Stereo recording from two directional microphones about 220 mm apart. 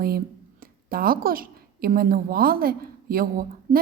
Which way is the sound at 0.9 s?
40° right (ahead or behind).